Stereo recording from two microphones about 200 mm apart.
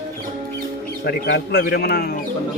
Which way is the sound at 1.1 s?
50° left (ahead or behind).